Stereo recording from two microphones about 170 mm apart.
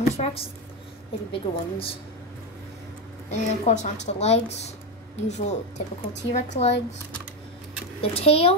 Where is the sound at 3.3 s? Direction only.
45° left (ahead or behind).